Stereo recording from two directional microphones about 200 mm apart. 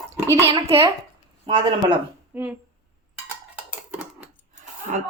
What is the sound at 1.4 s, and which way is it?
Speech, 25° right (ahead or behind).